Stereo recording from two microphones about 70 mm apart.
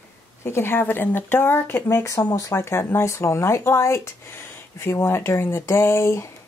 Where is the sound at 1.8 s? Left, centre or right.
Left.